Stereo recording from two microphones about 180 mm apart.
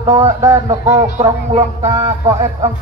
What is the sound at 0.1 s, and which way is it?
Speech, 15° right (ahead or behind).